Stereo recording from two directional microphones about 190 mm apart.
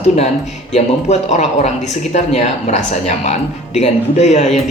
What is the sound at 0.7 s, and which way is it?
A man's voice, 35° left (ahead or behind).